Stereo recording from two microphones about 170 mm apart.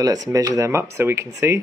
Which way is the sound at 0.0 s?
20° right (ahead or behind).